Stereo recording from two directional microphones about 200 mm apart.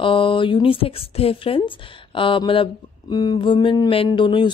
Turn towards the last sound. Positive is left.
turn(degrees=25)  # may be behind; listen again after turning